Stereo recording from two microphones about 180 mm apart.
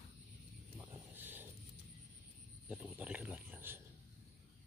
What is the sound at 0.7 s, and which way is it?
Wild animals, 10° right (ahead or behind).